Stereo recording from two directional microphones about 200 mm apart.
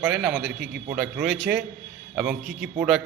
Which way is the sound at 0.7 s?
10° right (ahead or behind).